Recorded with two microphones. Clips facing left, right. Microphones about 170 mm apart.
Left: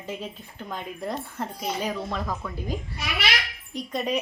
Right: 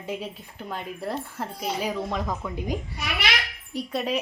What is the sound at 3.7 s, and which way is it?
Speech, 5° right (ahead or behind).